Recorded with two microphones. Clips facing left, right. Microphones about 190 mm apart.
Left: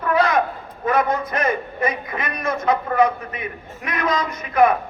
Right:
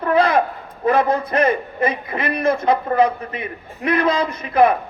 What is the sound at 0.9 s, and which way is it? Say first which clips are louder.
A man's voice: right 3 dB; 30° right (ahead or behind).